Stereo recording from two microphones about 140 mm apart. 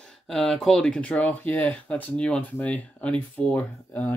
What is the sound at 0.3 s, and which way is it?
Speech, 5° left (ahead or behind).